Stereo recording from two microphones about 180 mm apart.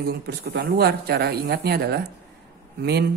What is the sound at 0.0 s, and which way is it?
Speech, 60° right (ahead or behind).